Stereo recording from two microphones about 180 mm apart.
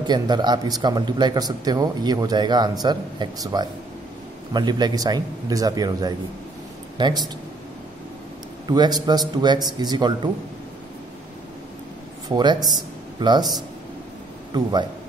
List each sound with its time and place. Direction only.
0.0 s speech: 25° right (ahead or behind)
8.6 s speech: 25° right (ahead or behind)
12.3 s speech: 25° right (ahead or behind)
14.5 s speech: 25° right (ahead or behind)